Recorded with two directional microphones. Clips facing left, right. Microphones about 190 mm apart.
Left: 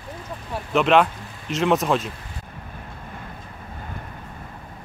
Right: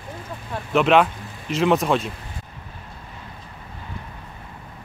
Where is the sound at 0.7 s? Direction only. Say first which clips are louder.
Right 1 dB; centre (ahead or behind).